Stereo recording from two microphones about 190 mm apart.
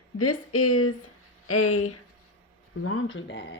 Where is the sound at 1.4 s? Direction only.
90° left.